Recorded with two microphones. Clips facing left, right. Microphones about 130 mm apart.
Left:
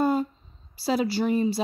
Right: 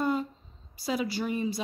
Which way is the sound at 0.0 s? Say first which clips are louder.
Left 5 dB; 30° left (ahead or behind).